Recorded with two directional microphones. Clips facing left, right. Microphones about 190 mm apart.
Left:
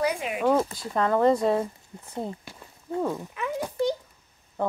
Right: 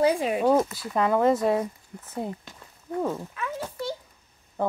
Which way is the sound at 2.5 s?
10° left (ahead or behind).